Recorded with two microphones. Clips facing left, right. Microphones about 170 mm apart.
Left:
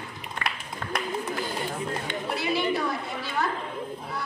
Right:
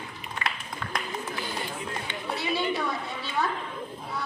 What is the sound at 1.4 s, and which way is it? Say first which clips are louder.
Run: left 3 dB; 45° left (ahead or behind).